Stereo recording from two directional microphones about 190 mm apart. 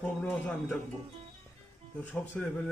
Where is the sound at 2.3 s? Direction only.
5° left (ahead or behind).